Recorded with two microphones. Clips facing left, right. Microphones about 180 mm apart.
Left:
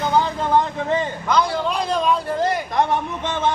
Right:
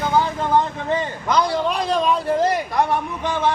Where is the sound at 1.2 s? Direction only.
Centre (ahead or behind).